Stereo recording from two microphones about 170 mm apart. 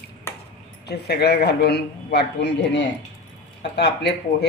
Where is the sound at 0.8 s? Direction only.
75° left (ahead or behind).